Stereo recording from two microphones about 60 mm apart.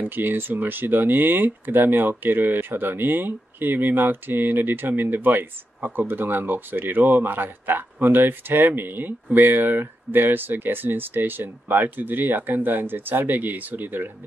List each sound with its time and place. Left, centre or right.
0.0 s speech: right